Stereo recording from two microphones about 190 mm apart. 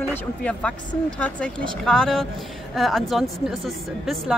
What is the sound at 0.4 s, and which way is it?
Speech, 5° left (ahead or behind).